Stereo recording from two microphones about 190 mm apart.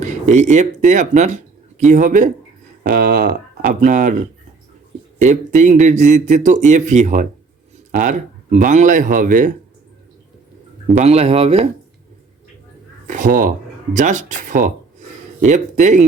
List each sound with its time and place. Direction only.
0.0 s speech: 40° right (ahead or behind)
5.2 s speech: 40° right (ahead or behind)
11.0 s speech: 35° right (ahead or behind)
13.1 s a sound: 45° right (ahead or behind)
13.9 s speech: 40° right (ahead or behind)